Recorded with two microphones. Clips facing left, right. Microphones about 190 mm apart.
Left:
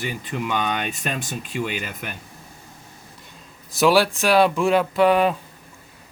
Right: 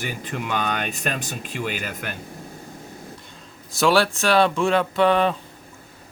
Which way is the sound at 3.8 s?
5° left (ahead or behind).